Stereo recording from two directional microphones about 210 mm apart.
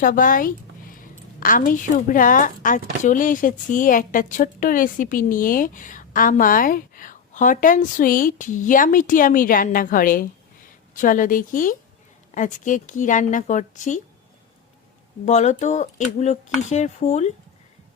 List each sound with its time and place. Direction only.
0.0 s a woman's voice: 40° left (ahead or behind)
15.2 s speech: 35° left (ahead or behind)